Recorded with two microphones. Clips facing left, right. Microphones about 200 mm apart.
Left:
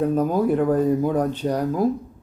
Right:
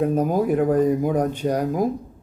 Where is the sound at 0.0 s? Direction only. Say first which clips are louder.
Even; 15° right (ahead or behind).